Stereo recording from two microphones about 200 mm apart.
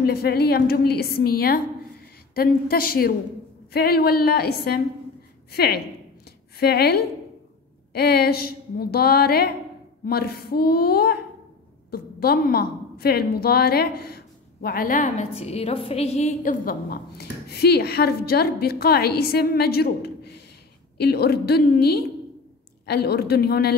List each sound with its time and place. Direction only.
0.0 s a woman's voice: 55° left (ahead or behind)